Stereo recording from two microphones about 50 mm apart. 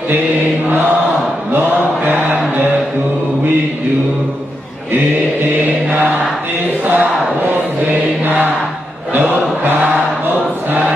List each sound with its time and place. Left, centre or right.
1.5 s chant: right
6.9 s music: right
9.1 s chant: right